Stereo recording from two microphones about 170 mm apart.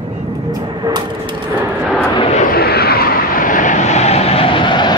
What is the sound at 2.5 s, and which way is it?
Vehicle, 65° left (ahead or behind).